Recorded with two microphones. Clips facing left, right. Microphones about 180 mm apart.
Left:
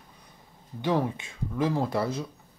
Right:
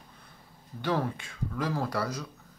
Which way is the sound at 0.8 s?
20° left (ahead or behind).